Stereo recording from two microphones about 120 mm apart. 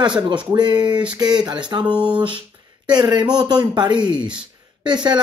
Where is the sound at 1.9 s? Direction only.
10° right (ahead or behind).